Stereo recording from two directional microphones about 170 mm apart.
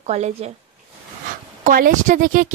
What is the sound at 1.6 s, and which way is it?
Speech, 55° right (ahead or behind).